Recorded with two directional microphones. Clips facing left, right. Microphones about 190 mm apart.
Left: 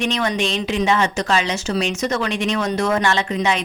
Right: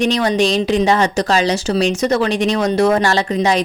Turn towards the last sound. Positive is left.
turn(degrees=-35)  # may be behind; listen again after turning